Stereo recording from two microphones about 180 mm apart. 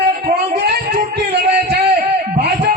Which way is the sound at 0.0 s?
65° right (ahead or behind).